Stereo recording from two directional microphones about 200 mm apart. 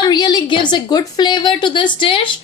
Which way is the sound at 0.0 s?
20° left (ahead or behind).